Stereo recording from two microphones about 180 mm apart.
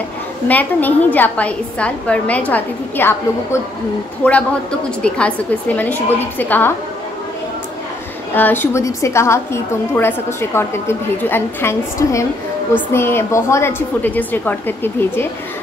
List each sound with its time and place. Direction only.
0.5 s a woman's voice: 10° left (ahead or behind)
8.4 s a woman's voice: 10° left (ahead or behind)